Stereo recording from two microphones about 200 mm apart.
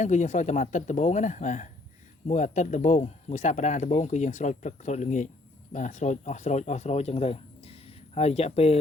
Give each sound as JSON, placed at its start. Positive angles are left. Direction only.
{"t": 0.0, "sound": "speech", "side_deg": 35}